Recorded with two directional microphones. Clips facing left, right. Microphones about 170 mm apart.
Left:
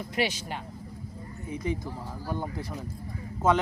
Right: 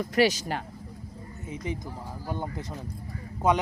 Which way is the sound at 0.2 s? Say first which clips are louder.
Right 6 dB; 40° right (ahead or behind).